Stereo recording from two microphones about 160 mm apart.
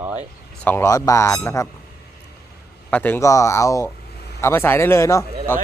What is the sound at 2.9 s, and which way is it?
Speech, 10° left (ahead or behind).